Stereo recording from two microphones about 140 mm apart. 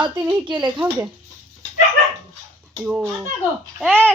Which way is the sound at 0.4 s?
35° right (ahead or behind).